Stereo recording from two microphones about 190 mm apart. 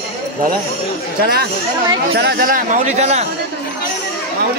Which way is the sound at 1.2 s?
55° right (ahead or behind).